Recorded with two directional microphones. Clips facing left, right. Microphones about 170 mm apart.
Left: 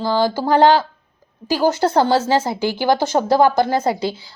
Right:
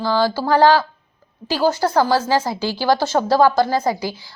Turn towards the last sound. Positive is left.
turn(degrees=25)  # may be behind; listen again after turning